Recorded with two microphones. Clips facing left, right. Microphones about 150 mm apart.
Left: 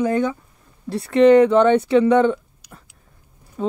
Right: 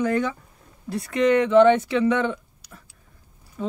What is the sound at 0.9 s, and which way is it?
Speech, 30° left (ahead or behind).